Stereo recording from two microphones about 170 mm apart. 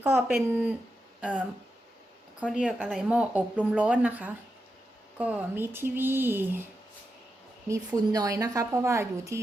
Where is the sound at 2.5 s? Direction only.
5° right (ahead or behind).